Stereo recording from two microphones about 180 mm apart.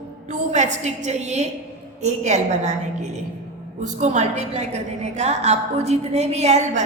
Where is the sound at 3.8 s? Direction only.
40° right (ahead or behind).